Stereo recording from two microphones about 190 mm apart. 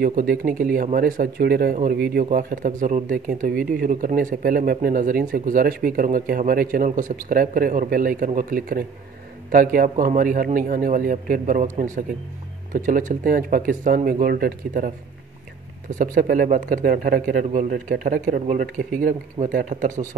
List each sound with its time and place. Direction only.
0.0 s speech: 45° right (ahead or behind)
15.9 s speech: 45° right (ahead or behind)